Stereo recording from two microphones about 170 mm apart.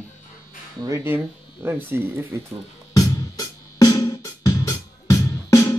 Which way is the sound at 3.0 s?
20° left (ahead or behind).